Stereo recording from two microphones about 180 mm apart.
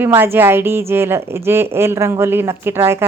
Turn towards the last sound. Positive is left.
turn(degrees=-15)  # may be behind; listen again after turning